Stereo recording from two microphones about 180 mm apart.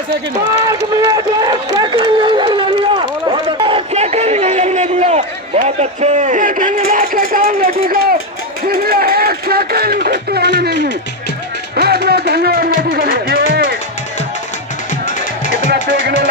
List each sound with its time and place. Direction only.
0.7 s speech: 20° right (ahead or behind); by 10.9 s 65° right (ahead or behind)
11.7 s music: 60° right (ahead or behind)
15.0 s music: 45° left (ahead or behind)
15.7 s music: 70° right (ahead or behind)